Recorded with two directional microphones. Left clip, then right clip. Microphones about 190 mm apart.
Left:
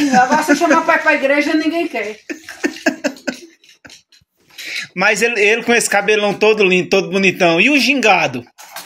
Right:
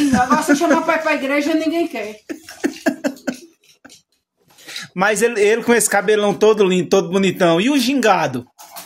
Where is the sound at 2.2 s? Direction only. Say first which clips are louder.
Left 2 dB; 50° right (ahead or behind).